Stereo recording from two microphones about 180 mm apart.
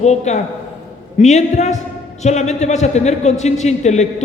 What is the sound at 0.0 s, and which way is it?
A man's voice, 40° left (ahead or behind).